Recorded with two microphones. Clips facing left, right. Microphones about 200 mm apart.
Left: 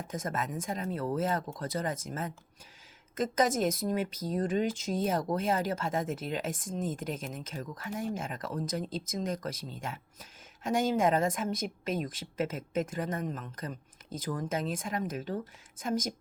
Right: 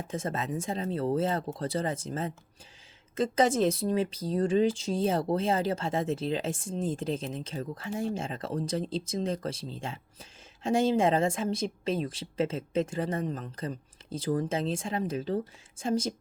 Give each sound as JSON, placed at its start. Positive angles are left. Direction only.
{"t": 0.1, "sound": "speech", "side_deg": -30}